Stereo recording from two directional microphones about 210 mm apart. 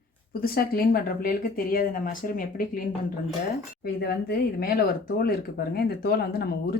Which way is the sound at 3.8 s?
50° left (ahead or behind).